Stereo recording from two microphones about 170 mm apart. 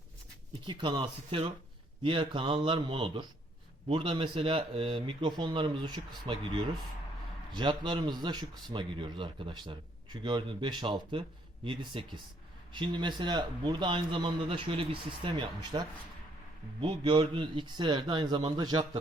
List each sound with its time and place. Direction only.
0.7 s a man's voice: 30° right (ahead or behind)
16.8 s speech: 30° right (ahead or behind)